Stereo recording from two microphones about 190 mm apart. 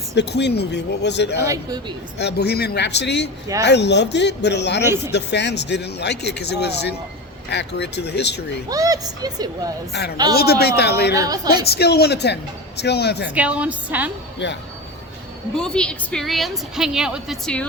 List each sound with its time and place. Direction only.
0.1 s speech: 60° left (ahead or behind)
1.5 s a woman's voice: 20° right (ahead or behind)
2.1 s speech: 60° left (ahead or behind)
8.7 s a woman's voice: 20° right (ahead or behind)
9.9 s speech: 60° left (ahead or behind)
11.1 s a woman's voice: 20° right (ahead or behind)
11.5 s speech: 55° left (ahead or behind)
13.3 s a woman's voice: 5° right (ahead or behind)
14.4 s speech: 65° left (ahead or behind)
15.5 s a woman's voice: 5° left (ahead or behind)